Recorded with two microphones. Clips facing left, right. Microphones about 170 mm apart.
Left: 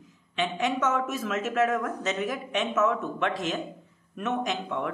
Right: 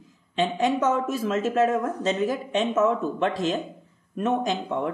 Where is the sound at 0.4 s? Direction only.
35° right (ahead or behind).